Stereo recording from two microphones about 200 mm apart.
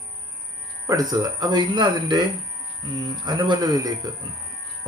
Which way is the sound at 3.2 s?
20° right (ahead or behind).